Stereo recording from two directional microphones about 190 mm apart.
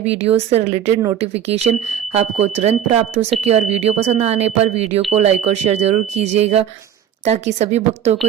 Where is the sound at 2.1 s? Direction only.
35° right (ahead or behind).